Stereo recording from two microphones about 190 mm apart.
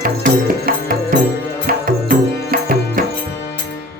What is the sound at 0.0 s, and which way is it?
Music, 50° right (ahead or behind).